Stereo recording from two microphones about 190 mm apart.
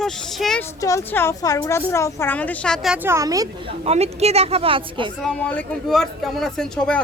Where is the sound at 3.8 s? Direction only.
35° right (ahead or behind).